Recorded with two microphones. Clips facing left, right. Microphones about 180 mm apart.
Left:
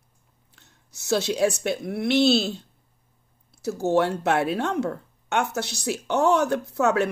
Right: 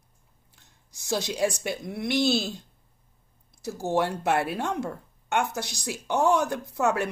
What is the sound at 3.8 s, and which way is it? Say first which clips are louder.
A woman's voice: left 4 dB; 10° right (ahead or behind).